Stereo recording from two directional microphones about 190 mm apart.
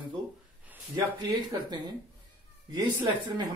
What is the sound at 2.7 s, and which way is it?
Speech, 20° right (ahead or behind).